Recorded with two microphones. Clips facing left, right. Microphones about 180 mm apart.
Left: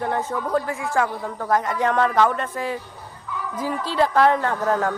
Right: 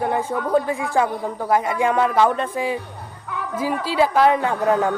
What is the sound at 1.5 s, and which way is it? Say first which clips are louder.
A woman's voice: right 2 dB; 10° right (ahead or behind).